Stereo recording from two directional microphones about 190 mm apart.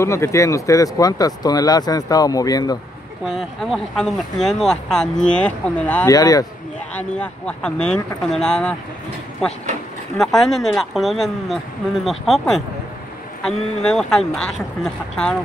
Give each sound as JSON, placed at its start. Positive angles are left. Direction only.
{"t": 0.0, "sound": "speech", "side_deg": 15}
{"t": 3.3, "sound": "speech", "side_deg": 0}
{"t": 6.0, "sound": "speech", "side_deg": 20}
{"t": 7.0, "sound": "speech", "side_deg": 5}
{"t": 10.1, "sound": "speech", "side_deg": 0}